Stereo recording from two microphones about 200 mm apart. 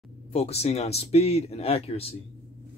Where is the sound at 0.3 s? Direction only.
30° left (ahead or behind).